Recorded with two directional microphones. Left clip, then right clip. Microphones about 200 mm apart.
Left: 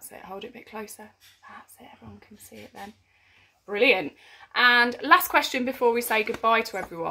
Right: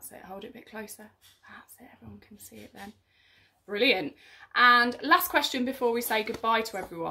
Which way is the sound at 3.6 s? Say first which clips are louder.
Left 4 dB; 10° right (ahead or behind).